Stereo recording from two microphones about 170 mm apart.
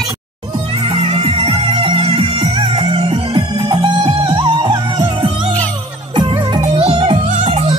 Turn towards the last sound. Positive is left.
turn(degrees=-35)  # may be behind; listen again after turning